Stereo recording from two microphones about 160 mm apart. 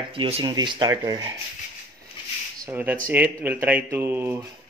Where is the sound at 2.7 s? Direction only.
10° right (ahead or behind).